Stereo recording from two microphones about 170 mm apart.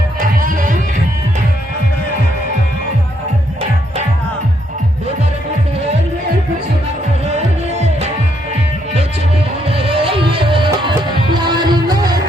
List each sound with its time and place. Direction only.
0.2 s music: 55° right (ahead or behind)
7.3 s music: 40° right (ahead or behind)
9.6 s music: 35° right (ahead or behind)